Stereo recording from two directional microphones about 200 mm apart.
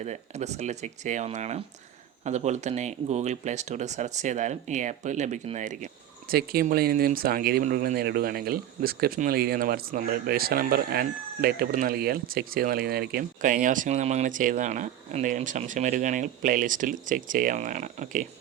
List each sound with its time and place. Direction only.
0.0 s speech: 35° right (ahead or behind)